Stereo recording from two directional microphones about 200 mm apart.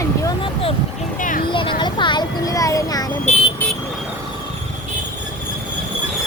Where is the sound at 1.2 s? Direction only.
40° left (ahead or behind).